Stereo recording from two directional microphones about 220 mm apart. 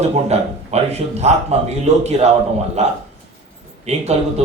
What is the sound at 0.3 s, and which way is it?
A man's voice, 30° right (ahead or behind).